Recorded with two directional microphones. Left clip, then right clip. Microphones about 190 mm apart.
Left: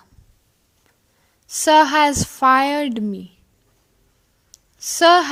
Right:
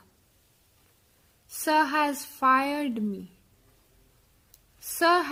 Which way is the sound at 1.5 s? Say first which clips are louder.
Left 11 dB; 30° left (ahead or behind).